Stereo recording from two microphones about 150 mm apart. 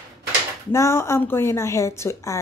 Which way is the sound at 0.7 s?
20° left (ahead or behind).